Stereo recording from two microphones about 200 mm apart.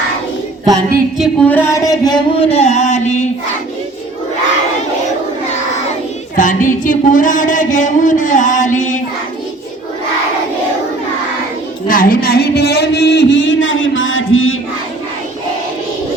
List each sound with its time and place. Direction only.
1.2 s speech: 5° left (ahead or behind); by 3.2 s 35° left (ahead or behind)
5.9 s singing: 40° left (ahead or behind)
11.9 s speech: 45° left (ahead or behind); by 14.5 s 80° left